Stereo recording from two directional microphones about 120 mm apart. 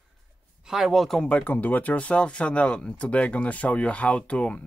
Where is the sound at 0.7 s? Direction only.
Centre (ahead or behind).